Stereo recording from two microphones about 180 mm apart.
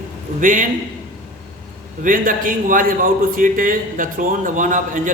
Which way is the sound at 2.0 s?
50° right (ahead or behind).